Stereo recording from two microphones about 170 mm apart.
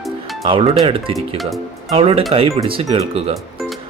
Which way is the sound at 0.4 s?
35° right (ahead or behind).